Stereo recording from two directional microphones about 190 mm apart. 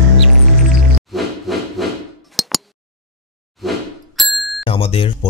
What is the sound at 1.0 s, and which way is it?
Music, centre (ahead or behind).